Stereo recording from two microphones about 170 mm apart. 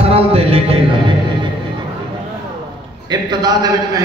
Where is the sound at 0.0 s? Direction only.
35° right (ahead or behind).